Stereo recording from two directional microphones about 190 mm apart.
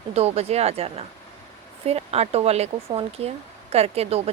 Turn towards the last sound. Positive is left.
turn(degrees=-30)  # may be behind; listen again after turning